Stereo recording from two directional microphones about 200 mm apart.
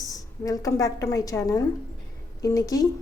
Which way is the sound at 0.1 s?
15° left (ahead or behind).